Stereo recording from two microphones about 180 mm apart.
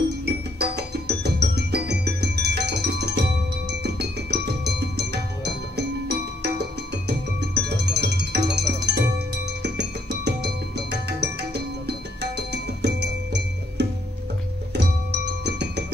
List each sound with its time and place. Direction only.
0.6 s music: 65° right (ahead or behind)